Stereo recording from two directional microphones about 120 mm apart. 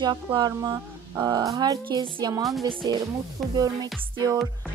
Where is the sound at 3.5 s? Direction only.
35° right (ahead or behind).